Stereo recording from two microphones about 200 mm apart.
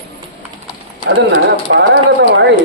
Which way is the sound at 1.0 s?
60° right (ahead or behind).